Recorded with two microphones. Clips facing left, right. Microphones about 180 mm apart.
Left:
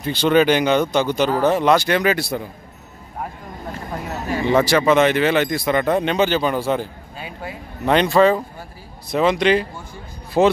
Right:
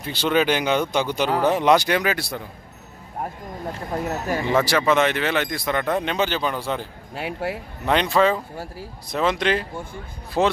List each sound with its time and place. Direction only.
0.0 s speech: 5° right (ahead or behind)
4.5 s speech: centre (ahead or behind)
7.2 s speech: 75° right (ahead or behind)
7.8 s speech: centre (ahead or behind)